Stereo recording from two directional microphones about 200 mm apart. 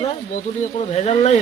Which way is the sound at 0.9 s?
35° left (ahead or behind).